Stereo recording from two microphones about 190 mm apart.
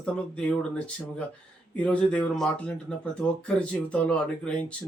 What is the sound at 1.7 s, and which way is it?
Speech, 5° left (ahead or behind).